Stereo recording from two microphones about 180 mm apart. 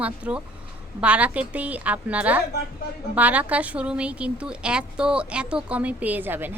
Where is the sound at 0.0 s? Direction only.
5° right (ahead or behind).